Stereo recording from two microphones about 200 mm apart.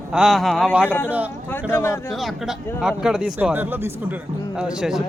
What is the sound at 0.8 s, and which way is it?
Speech, 10° left (ahead or behind).